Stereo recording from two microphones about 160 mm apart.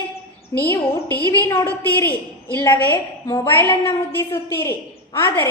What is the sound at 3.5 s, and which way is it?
A woman's voice, 15° left (ahead or behind).